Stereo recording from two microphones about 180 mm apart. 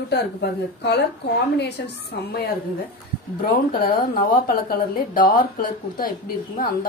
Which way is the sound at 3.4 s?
60° left (ahead or behind).